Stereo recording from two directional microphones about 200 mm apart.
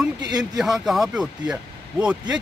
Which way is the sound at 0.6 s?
Centre (ahead or behind).